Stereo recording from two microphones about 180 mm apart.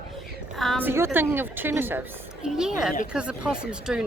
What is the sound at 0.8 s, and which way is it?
A woman's voice, 10° right (ahead or behind).